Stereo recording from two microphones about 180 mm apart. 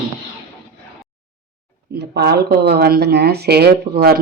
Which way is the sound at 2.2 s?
65° right (ahead or behind).